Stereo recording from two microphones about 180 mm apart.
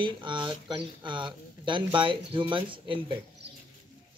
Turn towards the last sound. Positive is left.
turn(degrees=-25)  # may be behind; listen again after turning